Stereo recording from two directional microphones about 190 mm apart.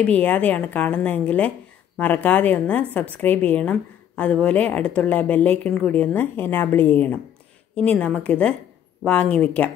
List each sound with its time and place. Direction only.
0.0 s a woman's voice: 5° left (ahead or behind)